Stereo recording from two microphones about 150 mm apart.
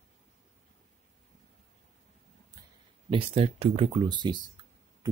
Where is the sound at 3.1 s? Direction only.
35° right (ahead or behind).